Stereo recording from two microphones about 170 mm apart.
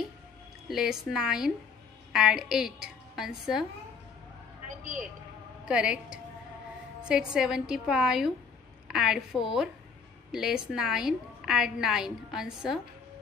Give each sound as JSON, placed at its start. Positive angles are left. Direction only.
{"t": 0.7, "sound": "a woman's voice", "side_deg": 0}
{"t": 4.6, "sound": "vehicle", "side_deg": -50}
{"t": 5.7, "sound": "a woman's voice", "side_deg": -5}
{"t": 7.3, "sound": "a woman's voice", "side_deg": -5}